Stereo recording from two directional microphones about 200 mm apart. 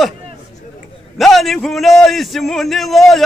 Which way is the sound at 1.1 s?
Centre (ahead or behind).